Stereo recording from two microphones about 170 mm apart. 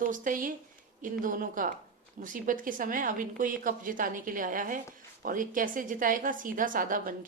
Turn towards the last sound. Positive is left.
turn(degrees=-55)  # may be behind; listen again after turning